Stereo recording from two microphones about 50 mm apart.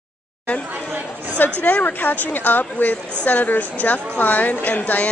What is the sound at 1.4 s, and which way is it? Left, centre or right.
A woman's voice, left.